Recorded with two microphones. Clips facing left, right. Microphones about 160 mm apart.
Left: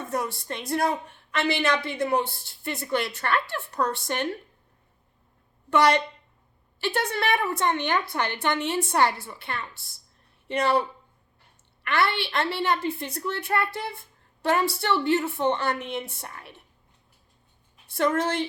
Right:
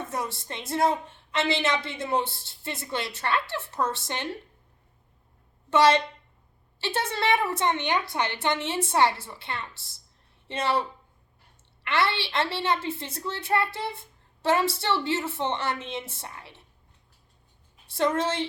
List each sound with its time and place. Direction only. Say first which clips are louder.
0.0 s a woman's voice: left 3 dB; 20° right (ahead or behind)
5.7 s a woman's voice: even; 20° right (ahead or behind)
11.8 s a woman's voice: left 1 dB; 25° right (ahead or behind)
17.9 s a woman's voice: left 1 dB; 20° right (ahead or behind)